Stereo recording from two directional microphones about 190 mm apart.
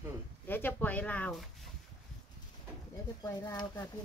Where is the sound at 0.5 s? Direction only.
10° left (ahead or behind).